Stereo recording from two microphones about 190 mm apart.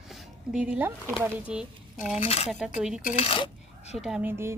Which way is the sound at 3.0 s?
35° left (ahead or behind).